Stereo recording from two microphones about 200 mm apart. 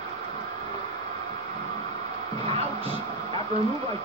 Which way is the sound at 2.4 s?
30° right (ahead or behind).